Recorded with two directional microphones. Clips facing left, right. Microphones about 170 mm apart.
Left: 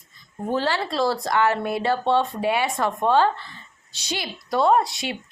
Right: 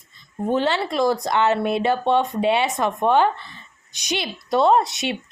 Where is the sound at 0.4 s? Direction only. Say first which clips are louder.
Right 3 dB; 20° right (ahead or behind).